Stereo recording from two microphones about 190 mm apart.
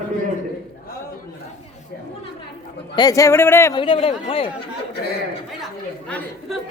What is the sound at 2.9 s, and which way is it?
Speech, 20° left (ahead or behind).